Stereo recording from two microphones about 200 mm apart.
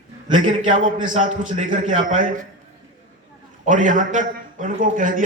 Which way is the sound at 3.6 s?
40° right (ahead or behind).